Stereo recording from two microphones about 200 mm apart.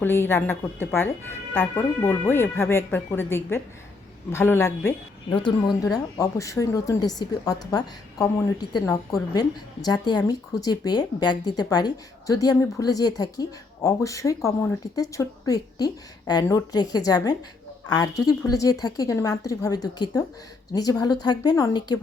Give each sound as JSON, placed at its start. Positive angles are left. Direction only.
{"t": 0.0, "sound": "speech", "side_deg": 10}
{"t": 5.3, "sound": "speech", "side_deg": 25}